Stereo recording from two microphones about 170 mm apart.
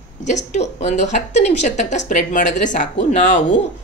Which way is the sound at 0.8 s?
45° left (ahead or behind).